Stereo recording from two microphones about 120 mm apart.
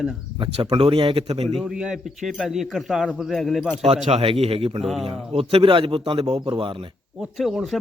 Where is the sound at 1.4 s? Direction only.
Centre (ahead or behind).